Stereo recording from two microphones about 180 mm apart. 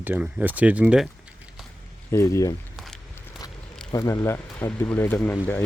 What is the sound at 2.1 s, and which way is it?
Speech, 15° left (ahead or behind).